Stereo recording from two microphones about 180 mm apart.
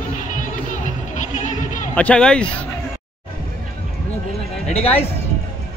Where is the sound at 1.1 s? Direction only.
45° left (ahead or behind).